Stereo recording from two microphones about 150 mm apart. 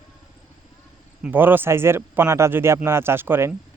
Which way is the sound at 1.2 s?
15° right (ahead or behind).